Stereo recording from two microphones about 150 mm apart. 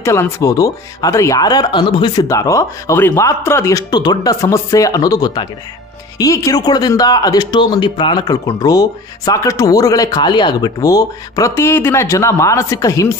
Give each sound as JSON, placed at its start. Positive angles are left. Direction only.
{"t": 0.0, "sound": "speech", "side_deg": 20}